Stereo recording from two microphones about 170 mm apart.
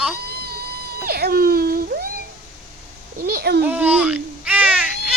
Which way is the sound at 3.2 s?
65° right (ahead or behind).